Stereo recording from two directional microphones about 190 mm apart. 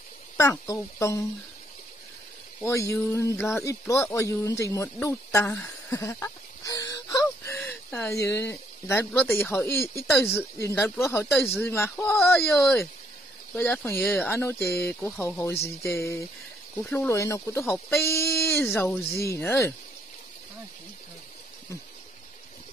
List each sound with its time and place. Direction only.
0.4 s speech: 15° left (ahead or behind)
2.6 s speech: 15° left (ahead or behind)